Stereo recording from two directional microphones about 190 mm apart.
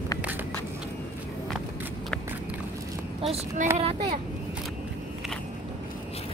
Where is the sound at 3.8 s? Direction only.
30° right (ahead or behind).